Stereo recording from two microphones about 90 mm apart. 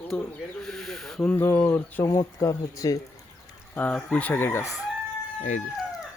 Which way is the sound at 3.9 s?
15° left (ahead or behind).